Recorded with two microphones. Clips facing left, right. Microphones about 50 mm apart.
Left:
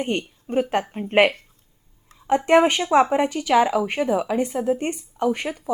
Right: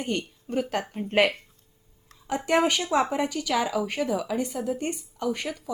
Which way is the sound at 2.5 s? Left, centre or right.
Left.